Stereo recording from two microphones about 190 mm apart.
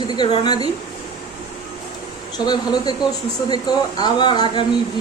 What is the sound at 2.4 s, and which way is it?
Speech, 20° left (ahead or behind).